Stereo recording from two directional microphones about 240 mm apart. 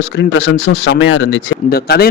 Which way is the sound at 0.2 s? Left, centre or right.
Left.